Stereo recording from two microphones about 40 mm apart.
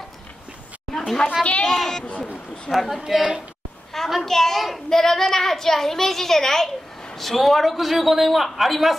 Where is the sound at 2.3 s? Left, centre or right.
Left.